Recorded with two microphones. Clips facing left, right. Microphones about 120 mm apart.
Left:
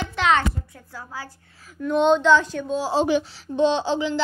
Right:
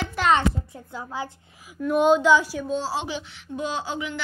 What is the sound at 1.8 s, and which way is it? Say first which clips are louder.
A woman's voice: even; 5° right (ahead or behind).